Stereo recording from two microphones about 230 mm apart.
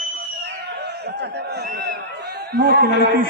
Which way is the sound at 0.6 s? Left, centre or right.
Right.